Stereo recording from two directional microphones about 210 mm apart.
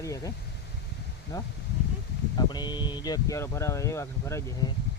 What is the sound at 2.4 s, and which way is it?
Speech, 20° left (ahead or behind).